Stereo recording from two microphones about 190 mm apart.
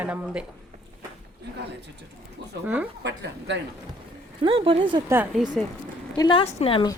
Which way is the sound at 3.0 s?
70° right (ahead or behind).